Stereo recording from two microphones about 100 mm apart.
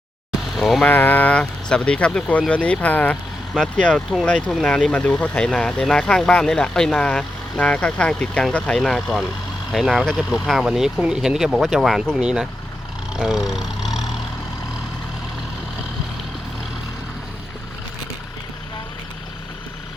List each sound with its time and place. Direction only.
0.5 s speech: centre (ahead or behind)
0.9 s speech: 20° left (ahead or behind); by 14.0 s 5° right (ahead or behind)